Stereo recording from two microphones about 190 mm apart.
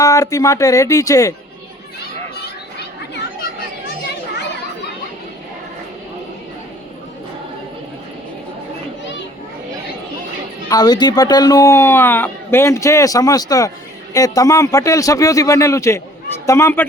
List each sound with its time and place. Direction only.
0.0 s speech: 15° left (ahead or behind)
10.7 s speech: 20° left (ahead or behind)